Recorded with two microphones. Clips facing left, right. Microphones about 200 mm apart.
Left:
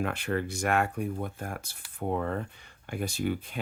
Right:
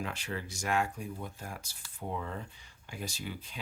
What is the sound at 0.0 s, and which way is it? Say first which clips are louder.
Speech: left 8 dB; 60° left (ahead or behind).